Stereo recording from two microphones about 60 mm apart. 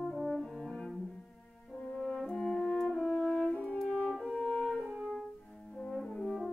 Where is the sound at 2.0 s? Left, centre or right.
Centre.